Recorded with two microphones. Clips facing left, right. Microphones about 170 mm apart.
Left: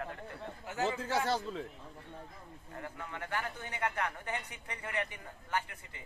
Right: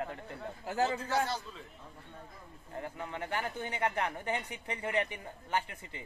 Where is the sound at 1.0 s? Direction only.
80° left.